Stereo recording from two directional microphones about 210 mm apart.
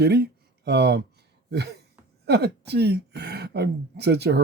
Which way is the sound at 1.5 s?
50° right (ahead or behind).